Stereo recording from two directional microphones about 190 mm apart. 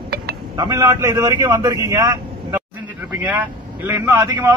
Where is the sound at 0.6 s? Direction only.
15° right (ahead or behind).